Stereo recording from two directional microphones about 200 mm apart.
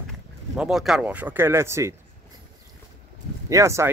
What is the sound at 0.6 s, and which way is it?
Speech, centre (ahead or behind).